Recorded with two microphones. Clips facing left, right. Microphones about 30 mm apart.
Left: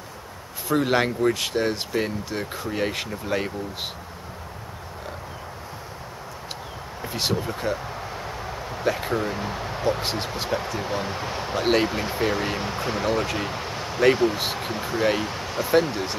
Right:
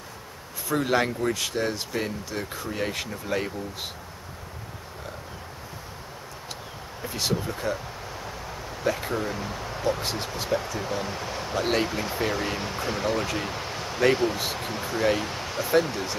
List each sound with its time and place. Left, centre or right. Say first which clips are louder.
0.7 s speech: left 3 dB; centre
7.3 s speech: left 2 dB; centre